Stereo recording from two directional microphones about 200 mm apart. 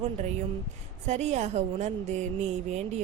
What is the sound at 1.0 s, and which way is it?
A woman's voice, 35° right (ahead or behind).